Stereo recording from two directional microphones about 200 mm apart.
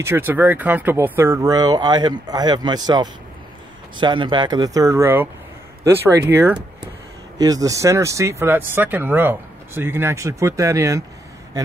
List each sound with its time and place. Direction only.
0.0 s speech: 10° right (ahead or behind)